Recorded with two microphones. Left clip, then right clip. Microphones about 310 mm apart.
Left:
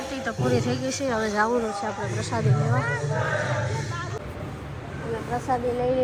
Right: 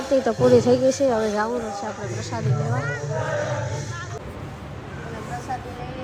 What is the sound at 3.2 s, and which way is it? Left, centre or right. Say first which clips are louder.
Music: right 2 dB; right.